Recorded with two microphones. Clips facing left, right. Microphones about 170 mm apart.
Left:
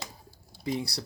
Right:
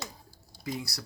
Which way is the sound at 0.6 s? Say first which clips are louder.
Left 5 dB; 30° left (ahead or behind).